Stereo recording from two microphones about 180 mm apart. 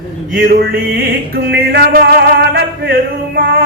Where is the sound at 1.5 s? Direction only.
60° right (ahead or behind).